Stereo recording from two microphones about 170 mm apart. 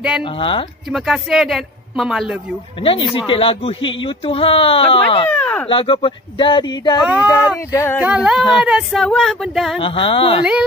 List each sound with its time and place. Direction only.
0.2 s speech: 30° left (ahead or behind)
0.8 s a man's voice: centre (ahead or behind)
2.8 s speech: 30° left (ahead or behind)
5.3 s a sound: 10° left (ahead or behind)
5.7 s speech: 30° left (ahead or behind)
7.5 s a sound: 15° left (ahead or behind)
8.0 s a man's voice: 5° right (ahead or behind)
9.8 s speech: 30° left (ahead or behind)